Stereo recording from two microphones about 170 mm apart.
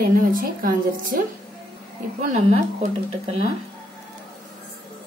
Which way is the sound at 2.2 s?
40° right (ahead or behind).